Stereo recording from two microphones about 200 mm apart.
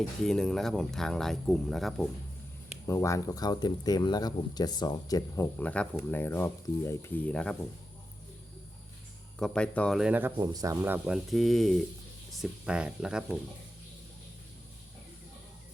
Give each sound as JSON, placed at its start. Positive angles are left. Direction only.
{"t": 0.3, "sound": "speech", "side_deg": 5}
{"t": 2.8, "sound": "speech", "side_deg": 15}
{"t": 9.4, "sound": "speech", "side_deg": 5}